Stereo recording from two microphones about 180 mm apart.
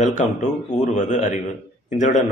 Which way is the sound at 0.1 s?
40° left (ahead or behind).